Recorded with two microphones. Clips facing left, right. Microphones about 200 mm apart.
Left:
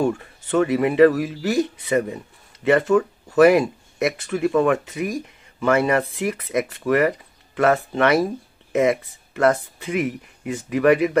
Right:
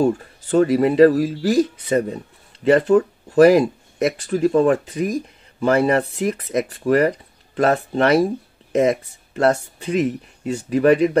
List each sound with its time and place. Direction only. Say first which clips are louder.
0.0 s speech: right 3 dB; 30° right (ahead or behind)